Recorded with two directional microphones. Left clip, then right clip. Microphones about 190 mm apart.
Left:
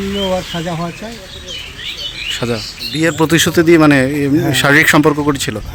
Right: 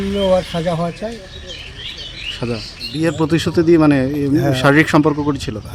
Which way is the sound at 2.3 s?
10° left (ahead or behind).